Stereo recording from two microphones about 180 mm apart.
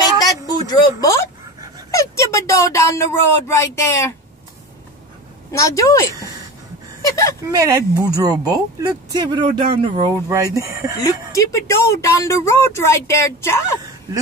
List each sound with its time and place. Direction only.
0.0 s a sound: 20° left (ahead or behind)
1.9 s speech: 15° left (ahead or behind)
5.5 s speech: 15° left (ahead or behind)
7.4 s speech: 20° right (ahead or behind)
10.1 s speech: 20° right (ahead or behind)
11.1 s speech: 15° left (ahead or behind)